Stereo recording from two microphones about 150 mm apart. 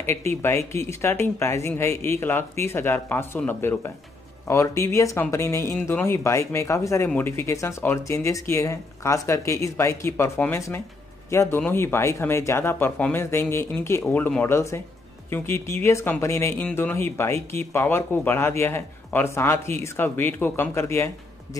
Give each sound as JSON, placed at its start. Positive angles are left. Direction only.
{"t": 0.0, "sound": "speech", "side_deg": 15}